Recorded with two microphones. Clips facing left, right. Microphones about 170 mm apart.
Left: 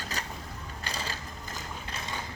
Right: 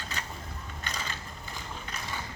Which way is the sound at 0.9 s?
35° left (ahead or behind).